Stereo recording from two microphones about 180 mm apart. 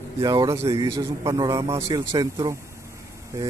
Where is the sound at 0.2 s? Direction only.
20° right (ahead or behind).